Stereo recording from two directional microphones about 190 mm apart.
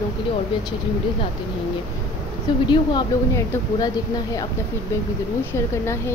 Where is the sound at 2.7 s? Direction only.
20° left (ahead or behind).